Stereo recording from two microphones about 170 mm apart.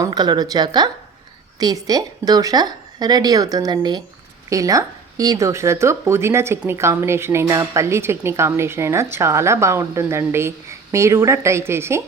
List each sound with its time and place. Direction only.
0.0 s a woman's voice: 25° right (ahead or behind)